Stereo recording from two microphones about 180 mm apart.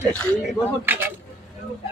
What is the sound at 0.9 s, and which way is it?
Speech, 10° right (ahead or behind).